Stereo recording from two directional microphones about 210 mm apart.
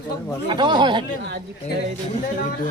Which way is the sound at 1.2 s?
55° right (ahead or behind).